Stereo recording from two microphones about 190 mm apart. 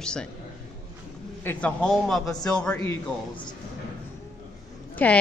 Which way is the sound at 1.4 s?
5° left (ahead or behind).